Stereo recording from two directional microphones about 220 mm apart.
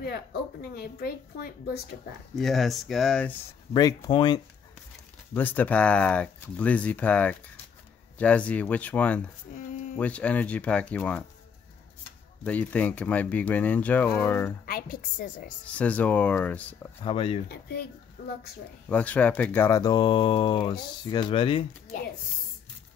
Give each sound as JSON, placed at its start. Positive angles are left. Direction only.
{"t": 0.0, "sound": "a woman's voice", "side_deg": 45}
{"t": 2.3, "sound": "speech", "side_deg": 0}
{"t": 3.7, "sound": "speech", "side_deg": 20}
{"t": 5.3, "sound": "speech", "side_deg": 10}
{"t": 12.4, "sound": "speech", "side_deg": 5}
{"t": 14.7, "sound": "a woman's voice", "side_deg": 40}
{"t": 15.6, "sound": "speech", "side_deg": 5}
{"t": 17.0, "sound": "a woman's voice", "side_deg": 25}
{"t": 18.9, "sound": "speech", "side_deg": 5}